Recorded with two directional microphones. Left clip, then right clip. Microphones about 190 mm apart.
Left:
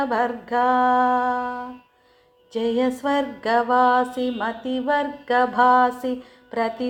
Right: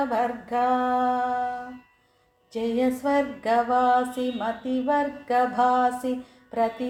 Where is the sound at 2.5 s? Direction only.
15° left (ahead or behind).